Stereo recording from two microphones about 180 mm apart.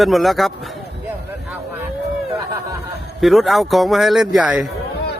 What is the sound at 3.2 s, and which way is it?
A man's voice, centre (ahead or behind).